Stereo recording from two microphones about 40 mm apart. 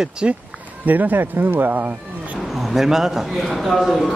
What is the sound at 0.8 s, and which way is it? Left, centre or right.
Speech, right.